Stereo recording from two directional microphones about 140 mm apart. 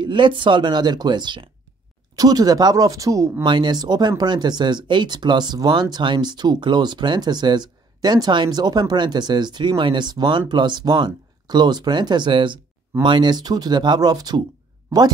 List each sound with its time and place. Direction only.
0.0 s speech: 35° right (ahead or behind)